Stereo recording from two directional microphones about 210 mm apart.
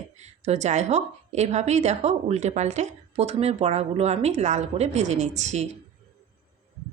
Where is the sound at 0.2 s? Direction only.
30° right (ahead or behind).